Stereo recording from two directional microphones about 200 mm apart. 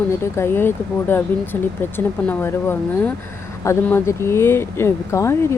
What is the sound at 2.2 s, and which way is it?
Speech, 10° left (ahead or behind).